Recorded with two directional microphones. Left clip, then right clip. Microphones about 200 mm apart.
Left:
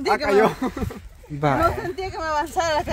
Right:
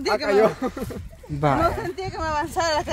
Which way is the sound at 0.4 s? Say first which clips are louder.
Even; 60° left (ahead or behind).